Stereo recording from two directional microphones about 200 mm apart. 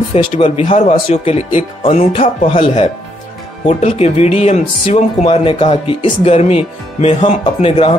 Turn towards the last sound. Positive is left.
turn(degrees=25)  # may be behind; listen again after turning